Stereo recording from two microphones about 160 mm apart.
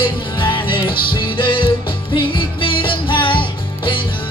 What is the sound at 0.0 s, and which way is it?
Music, 30° left (ahead or behind).